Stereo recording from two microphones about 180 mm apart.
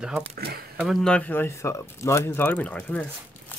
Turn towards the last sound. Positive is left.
turn(degrees=10)  # may be behind; listen again after turning